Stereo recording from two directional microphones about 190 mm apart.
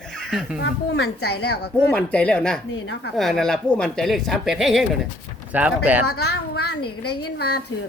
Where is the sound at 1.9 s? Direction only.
5° left (ahead or behind).